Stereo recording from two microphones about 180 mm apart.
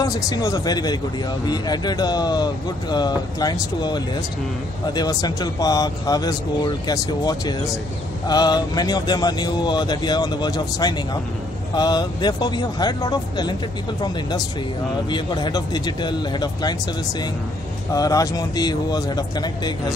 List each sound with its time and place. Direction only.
0.0 s speech: 20° left (ahead or behind)
15.0 s speech: 25° left (ahead or behind)
17.9 s speech: 20° left (ahead or behind)